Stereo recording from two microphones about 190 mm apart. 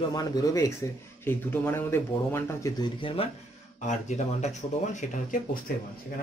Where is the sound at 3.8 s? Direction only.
40° left (ahead or behind).